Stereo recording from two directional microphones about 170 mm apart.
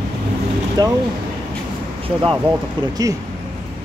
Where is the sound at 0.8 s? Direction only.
20° right (ahead or behind).